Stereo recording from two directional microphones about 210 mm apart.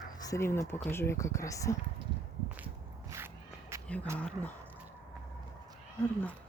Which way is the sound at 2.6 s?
15° right (ahead or behind).